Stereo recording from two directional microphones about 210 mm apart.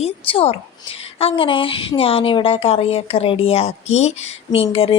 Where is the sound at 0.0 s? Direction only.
25° left (ahead or behind).